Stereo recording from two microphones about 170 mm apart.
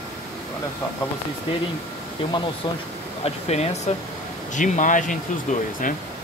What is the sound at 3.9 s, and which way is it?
Speech, 40° left (ahead or behind).